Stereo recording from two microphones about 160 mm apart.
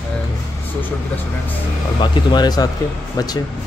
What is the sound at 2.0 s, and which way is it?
Speech, 25° left (ahead or behind).